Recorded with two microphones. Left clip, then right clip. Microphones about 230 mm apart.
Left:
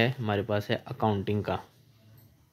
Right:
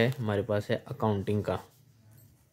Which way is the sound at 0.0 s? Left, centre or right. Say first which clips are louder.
Left 1 dB; centre.